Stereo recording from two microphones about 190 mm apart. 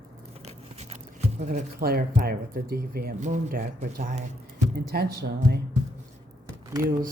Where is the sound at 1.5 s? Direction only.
50° right (ahead or behind).